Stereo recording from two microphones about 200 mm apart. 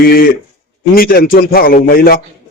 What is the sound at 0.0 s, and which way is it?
A man's voice, 50° left (ahead or behind).